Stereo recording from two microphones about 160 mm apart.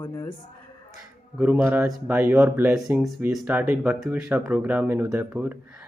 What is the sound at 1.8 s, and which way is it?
Speech, 10° right (ahead or behind).